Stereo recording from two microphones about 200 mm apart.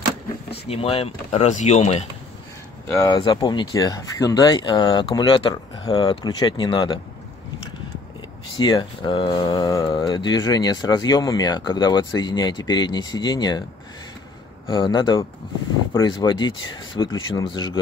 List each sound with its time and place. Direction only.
0.7 s speech: 30° left (ahead or behind)
2.9 s speech: 15° left (ahead or behind)
8.5 s speech: 20° left (ahead or behind)
14.7 s speech: 20° left (ahead or behind)